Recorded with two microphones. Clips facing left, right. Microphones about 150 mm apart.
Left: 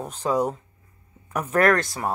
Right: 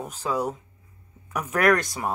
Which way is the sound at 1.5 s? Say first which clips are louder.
Left 1 dB; 15° right (ahead or behind).